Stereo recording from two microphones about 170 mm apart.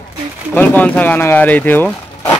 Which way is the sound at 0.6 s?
10° left (ahead or behind).